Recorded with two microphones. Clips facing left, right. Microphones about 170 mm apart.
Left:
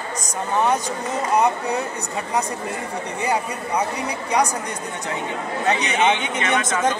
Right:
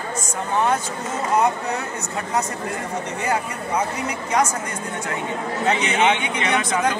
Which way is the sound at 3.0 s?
15° left (ahead or behind).